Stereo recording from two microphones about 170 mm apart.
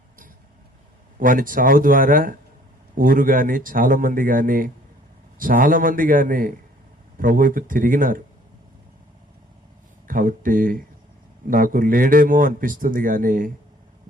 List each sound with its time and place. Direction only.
1.2 s a man's voice: 55° right (ahead or behind)
10.1 s a man's voice: 55° right (ahead or behind)